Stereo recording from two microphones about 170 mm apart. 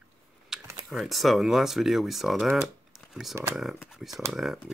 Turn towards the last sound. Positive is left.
turn(degrees=0)  # may be behind; listen again after turning